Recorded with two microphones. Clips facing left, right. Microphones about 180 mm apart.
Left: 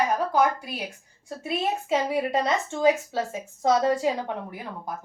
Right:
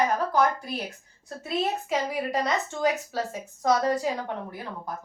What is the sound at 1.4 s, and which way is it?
A woman's voice, 25° left (ahead or behind).